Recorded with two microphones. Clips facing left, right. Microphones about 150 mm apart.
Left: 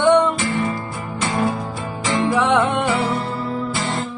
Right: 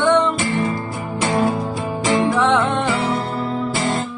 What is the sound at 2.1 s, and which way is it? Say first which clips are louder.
Music: right 1 dB; 10° right (ahead or behind).